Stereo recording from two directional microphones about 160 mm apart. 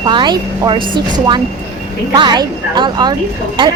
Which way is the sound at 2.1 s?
25° right (ahead or behind).